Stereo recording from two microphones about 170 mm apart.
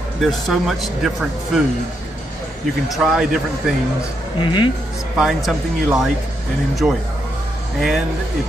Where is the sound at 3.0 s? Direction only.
5° right (ahead or behind).